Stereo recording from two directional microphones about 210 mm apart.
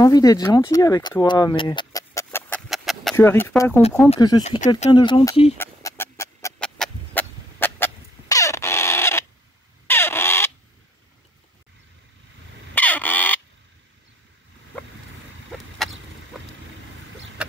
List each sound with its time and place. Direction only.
0.0 s speech: 15° left (ahead or behind)
2.7 s chicken: centre (ahead or behind)
3.2 s speech: 10° left (ahead or behind)
4.4 s speech: 30° left (ahead or behind)
5.6 s chicken: 15° left (ahead or behind)
6.8 s rodents: 10° left (ahead or behind)
9.8 s a sound: 10° left (ahead or behind)
12.7 s a sound: 10° left (ahead or behind)
15.8 s chicken: centre (ahead or behind)